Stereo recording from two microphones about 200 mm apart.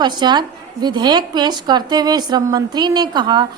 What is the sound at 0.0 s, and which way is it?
A woman's voice, 20° right (ahead or behind).